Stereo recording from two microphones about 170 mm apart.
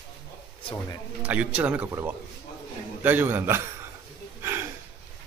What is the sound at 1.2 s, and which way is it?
Speech, 10° right (ahead or behind).